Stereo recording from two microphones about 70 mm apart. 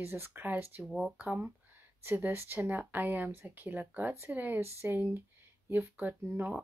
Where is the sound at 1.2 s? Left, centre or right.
Right.